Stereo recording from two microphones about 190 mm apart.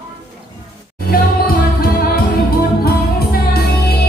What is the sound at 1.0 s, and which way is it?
Music, 50° left (ahead or behind).